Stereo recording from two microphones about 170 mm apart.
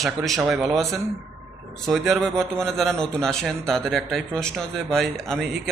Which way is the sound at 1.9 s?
Centre (ahead or behind).